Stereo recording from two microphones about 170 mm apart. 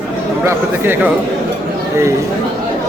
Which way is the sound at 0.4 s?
15° right (ahead or behind).